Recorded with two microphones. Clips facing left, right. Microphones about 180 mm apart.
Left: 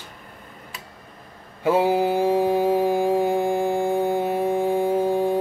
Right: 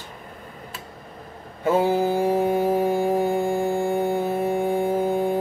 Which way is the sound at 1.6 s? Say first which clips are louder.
Left 1 dB; 5° left (ahead or behind).